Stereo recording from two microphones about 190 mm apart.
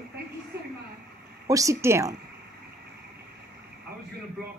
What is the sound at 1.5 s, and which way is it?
Speech, 15° right (ahead or behind).